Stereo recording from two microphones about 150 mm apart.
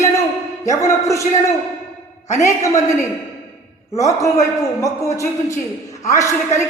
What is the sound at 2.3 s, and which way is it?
Speech, 20° left (ahead or behind).